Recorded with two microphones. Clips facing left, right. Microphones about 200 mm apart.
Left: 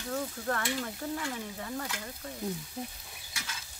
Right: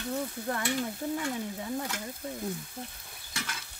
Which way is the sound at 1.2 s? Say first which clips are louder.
Right 4 dB; 15° right (ahead or behind).